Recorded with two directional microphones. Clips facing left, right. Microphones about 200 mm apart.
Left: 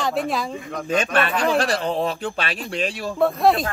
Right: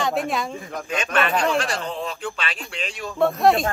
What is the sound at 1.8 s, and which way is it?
Speech, 55° left (ahead or behind).